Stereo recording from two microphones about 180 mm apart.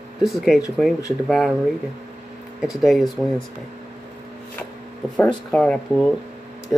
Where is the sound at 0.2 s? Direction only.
Centre (ahead or behind).